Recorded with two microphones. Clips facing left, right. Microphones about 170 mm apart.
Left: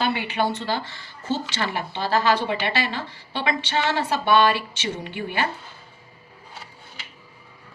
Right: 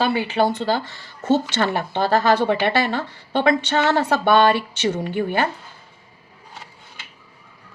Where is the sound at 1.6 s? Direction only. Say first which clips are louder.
Right 6 dB; 50° right (ahead or behind).